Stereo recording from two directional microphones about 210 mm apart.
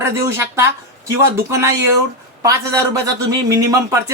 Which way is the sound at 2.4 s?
15° right (ahead or behind).